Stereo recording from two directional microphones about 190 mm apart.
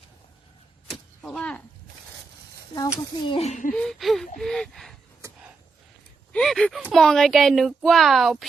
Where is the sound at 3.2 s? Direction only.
30° left (ahead or behind).